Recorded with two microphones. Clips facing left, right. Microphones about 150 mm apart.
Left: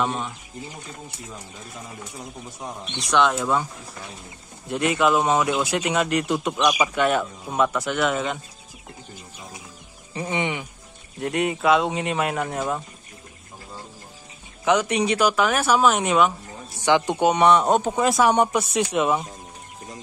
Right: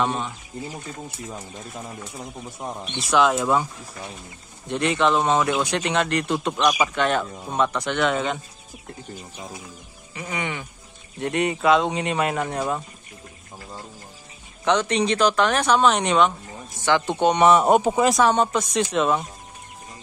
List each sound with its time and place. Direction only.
0.0 s speech: centre (ahead or behind)
3.0 s speech: 5° right (ahead or behind)
4.6 s speech: 5° left (ahead or behind)
10.1 s speech: 25° left (ahead or behind)
11.1 s speech: centre (ahead or behind)
14.6 s speech: 10° left (ahead or behind); by 18.0 s 10° right (ahead or behind)
18.0 s speech: centre (ahead or behind)
18.3 s speech: 15° left (ahead or behind)